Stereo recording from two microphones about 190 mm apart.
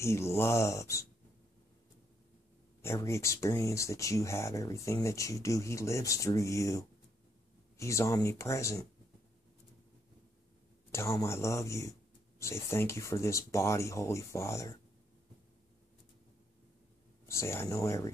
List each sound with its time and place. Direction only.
0.0 s speech: 15° left (ahead or behind)
2.8 s speech: 15° left (ahead or behind)
10.9 s speech: 15° left (ahead or behind)
17.3 s speech: 15° left (ahead or behind)